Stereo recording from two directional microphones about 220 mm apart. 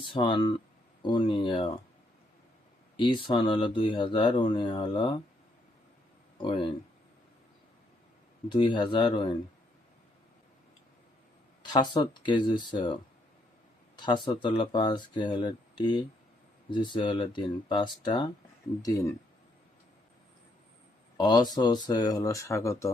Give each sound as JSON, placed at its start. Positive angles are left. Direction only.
{"t": 0.0, "sound": "speech", "side_deg": 20}
{"t": 3.0, "sound": "speech", "side_deg": 20}
{"t": 6.3, "sound": "speech", "side_deg": 20}
{"t": 8.4, "sound": "speech", "side_deg": 20}
{"t": 11.6, "sound": "speech", "side_deg": 20}
{"t": 13.9, "sound": "speech", "side_deg": 20}
{"t": 21.2, "sound": "speech", "side_deg": 20}